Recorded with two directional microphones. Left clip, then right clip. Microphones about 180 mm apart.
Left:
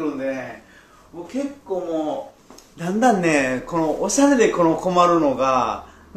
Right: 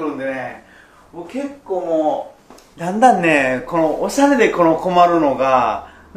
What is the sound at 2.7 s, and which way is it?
Speech, 35° left (ahead or behind).